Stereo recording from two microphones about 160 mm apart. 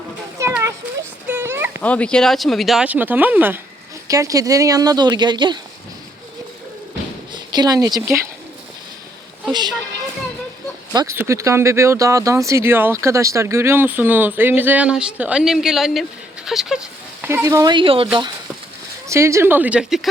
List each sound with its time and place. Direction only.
0.4 s children playing: 20° right (ahead or behind)
1.3 s a sound: 15° right (ahead or behind)
1.8 s speech: 10° left (ahead or behind); by 3.6 s 10° right (ahead or behind)
4.1 s a woman's voice: 20° right (ahead or behind)
7.5 s a woman's voice: 25° right (ahead or behind)
9.5 s a woman's voice: 25° right (ahead or behind)
10.9 s speech: 15° right (ahead or behind); by 16.0 s centre (ahead or behind)
16.5 s a sound: centre (ahead or behind)
17.2 s a woman's voice: 15° right (ahead or behind); by 18.3 s 30° right (ahead or behind)
19.0 s speech: 15° right (ahead or behind)